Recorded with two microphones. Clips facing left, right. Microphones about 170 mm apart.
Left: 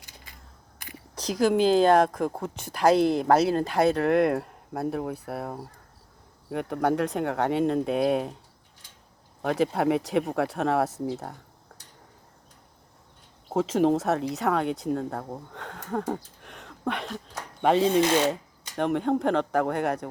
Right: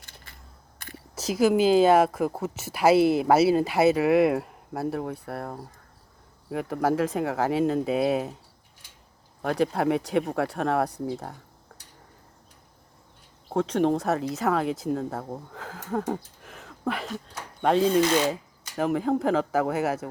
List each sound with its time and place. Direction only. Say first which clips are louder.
0.3 s a sound: even; 15° left (ahead or behind)
1.1 s a woman's voice: right 1 dB; 5° right (ahead or behind)
9.4 s a woman's voice: even; centre (ahead or behind)
13.5 s a woman's voice: left 1 dB; 5° left (ahead or behind)